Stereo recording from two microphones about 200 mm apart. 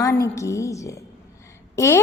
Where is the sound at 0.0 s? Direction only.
15° left (ahead or behind).